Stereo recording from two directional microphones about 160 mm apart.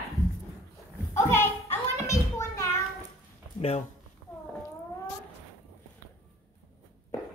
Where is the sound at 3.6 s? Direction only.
40° left (ahead or behind).